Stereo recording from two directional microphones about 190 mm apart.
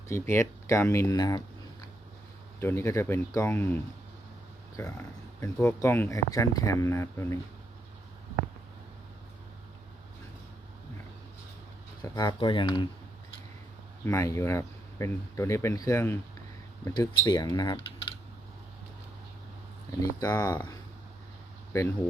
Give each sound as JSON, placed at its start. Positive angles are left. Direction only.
{"t": 0.1, "sound": "speech", "side_deg": 15}
{"t": 2.6, "sound": "speech", "side_deg": 15}
{"t": 5.4, "sound": "speech", "side_deg": 10}
{"t": 12.0, "sound": "speech", "side_deg": 20}
{"t": 14.0, "sound": "speech", "side_deg": 15}
{"t": 20.0, "sound": "speech", "side_deg": 20}